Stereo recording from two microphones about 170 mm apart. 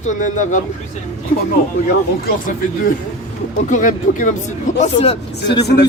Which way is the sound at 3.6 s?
50° left (ahead or behind).